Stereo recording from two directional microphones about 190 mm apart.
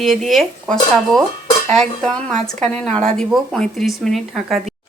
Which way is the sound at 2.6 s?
35° right (ahead or behind).